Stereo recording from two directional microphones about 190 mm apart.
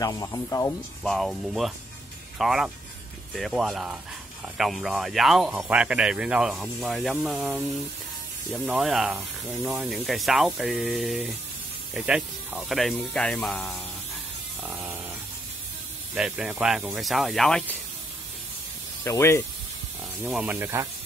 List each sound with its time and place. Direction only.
0.0 s speech: 20° left (ahead or behind)
1.0 s speech: centre (ahead or behind)
14.6 s a sound: 10° right (ahead or behind)
16.2 s speech: 5° right (ahead or behind)
19.0 s speech: 15° left (ahead or behind)
20.2 s speech: 5° right (ahead or behind)